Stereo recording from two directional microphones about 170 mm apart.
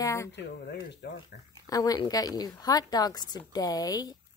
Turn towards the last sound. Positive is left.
turn(degrees=20)  # may be behind; listen again after turning